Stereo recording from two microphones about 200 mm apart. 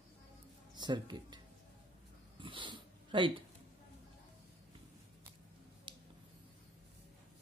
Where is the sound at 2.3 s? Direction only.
25° right (ahead or behind).